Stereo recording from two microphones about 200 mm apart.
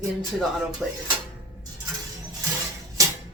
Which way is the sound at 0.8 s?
5° right (ahead or behind).